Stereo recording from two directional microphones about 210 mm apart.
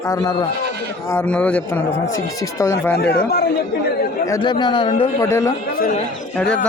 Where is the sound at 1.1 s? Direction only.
5° left (ahead or behind).